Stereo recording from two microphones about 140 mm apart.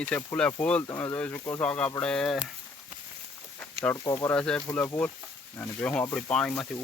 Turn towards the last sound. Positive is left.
turn(degrees=5)  # may be behind; listen again after turning